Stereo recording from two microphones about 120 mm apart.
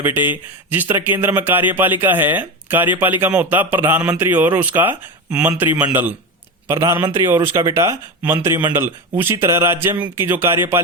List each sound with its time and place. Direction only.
0.0 s speech: 15° right (ahead or behind)